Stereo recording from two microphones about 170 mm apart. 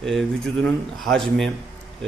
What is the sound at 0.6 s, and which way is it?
Speech, centre (ahead or behind).